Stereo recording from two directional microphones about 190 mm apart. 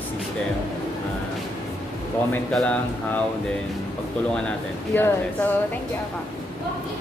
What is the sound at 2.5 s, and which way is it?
Speech, 5° left (ahead or behind).